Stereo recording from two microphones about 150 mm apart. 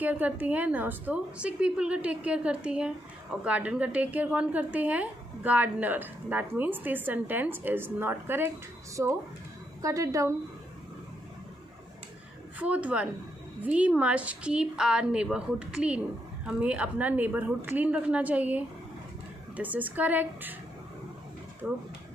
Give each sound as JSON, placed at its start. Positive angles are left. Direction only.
{"t": 0.0, "sound": "a woman's voice", "side_deg": -10}
{"t": 9.8, "sound": "a woman's voice", "side_deg": -20}
{"t": 12.5, "sound": "a woman's voice", "side_deg": -10}
{"t": 21.6, "sound": "a woman's voice", "side_deg": -10}